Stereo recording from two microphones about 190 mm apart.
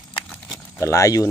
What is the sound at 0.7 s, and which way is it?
Speech, 15° left (ahead or behind).